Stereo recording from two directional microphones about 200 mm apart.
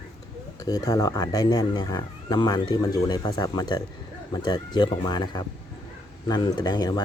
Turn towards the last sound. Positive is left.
turn(degrees=20)  # may be behind; listen again after turning